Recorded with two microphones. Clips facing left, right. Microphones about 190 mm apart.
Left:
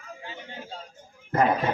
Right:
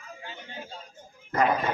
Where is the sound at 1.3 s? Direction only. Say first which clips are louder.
Left 2 dB; 30° left (ahead or behind).